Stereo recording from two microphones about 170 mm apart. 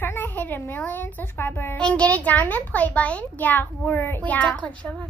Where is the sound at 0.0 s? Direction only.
15° left (ahead or behind).